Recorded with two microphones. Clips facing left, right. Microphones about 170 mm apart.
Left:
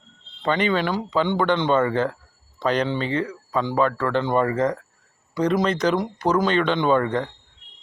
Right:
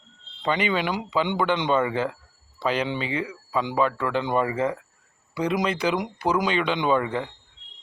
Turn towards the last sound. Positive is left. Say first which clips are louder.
# left 3 dB
turn(degrees=-10)  # may be behind; listen again after turning